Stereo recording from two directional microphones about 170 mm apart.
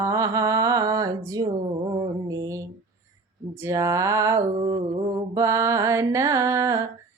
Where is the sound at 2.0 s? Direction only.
20° right (ahead or behind).